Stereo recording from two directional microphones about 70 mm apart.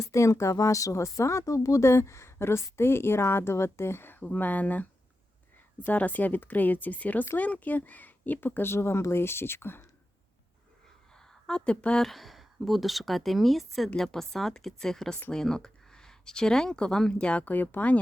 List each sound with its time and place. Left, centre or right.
0.0 s a woman's voice: left
5.9 s speech: left
11.1 s a sound: centre
12.0 s speech: centre; by 17.9 s left